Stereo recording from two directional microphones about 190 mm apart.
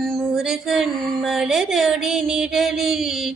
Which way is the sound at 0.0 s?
Centre (ahead or behind).